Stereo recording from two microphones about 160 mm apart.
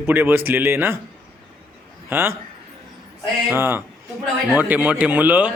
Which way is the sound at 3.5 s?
15° right (ahead or behind).